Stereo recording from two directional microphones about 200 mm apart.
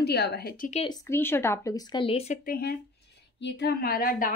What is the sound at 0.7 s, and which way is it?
Speech, 25° left (ahead or behind).